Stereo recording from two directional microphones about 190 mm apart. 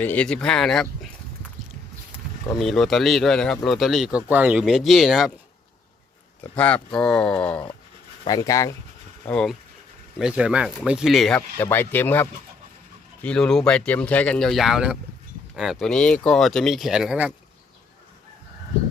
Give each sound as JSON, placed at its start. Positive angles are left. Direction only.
{"t": 0.0, "sound": "speech", "side_deg": 10}
{"t": 2.6, "sound": "speech", "side_deg": 0}
{"t": 6.6, "sound": "speech", "side_deg": 5}
{"t": 8.2, "sound": "speech", "side_deg": 20}
{"t": 9.2, "sound": "speech", "side_deg": 5}